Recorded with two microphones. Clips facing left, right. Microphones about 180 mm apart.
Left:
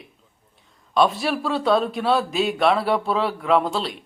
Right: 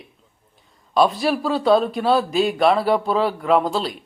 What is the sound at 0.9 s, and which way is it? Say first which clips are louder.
A man's voice: right 2 dB; centre (ahead or behind).